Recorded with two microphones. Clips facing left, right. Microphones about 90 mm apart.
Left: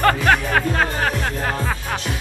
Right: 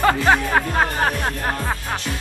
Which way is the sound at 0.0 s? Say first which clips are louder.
Even; 15° right (ahead or behind).